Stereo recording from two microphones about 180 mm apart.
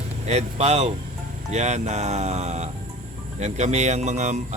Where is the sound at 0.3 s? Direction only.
35° right (ahead or behind).